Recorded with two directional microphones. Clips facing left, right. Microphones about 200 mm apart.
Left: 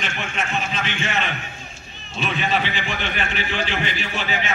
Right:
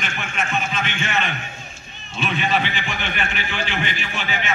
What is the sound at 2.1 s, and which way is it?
A man's voice, 35° left (ahead or behind).